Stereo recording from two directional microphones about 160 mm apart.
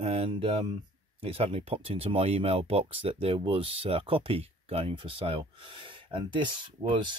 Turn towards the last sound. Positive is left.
turn(degrees=-30)  # may be behind; listen again after turning